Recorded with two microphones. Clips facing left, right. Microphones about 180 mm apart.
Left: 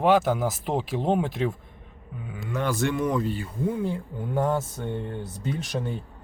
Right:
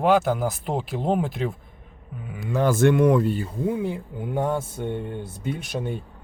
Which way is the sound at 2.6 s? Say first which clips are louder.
Right 8 dB; 50° right (ahead or behind).